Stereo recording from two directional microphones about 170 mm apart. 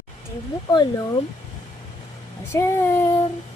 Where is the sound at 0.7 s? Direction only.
25° left (ahead or behind).